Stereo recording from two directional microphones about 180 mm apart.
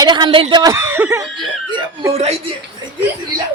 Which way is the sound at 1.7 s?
25° right (ahead or behind).